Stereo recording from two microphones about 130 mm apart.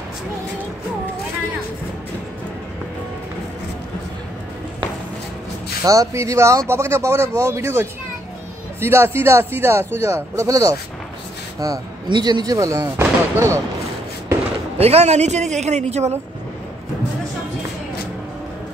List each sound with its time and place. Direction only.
5.9 s speech: 25° right (ahead or behind)
14.8 s speech: 50° right (ahead or behind)